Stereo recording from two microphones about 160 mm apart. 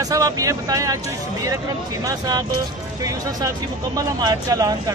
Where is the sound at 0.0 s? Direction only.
20° right (ahead or behind).